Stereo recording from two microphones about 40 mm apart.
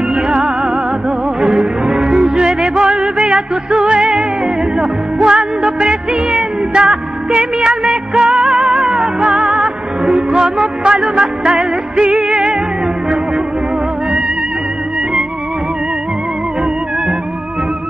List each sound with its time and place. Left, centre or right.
0.1 s music: centre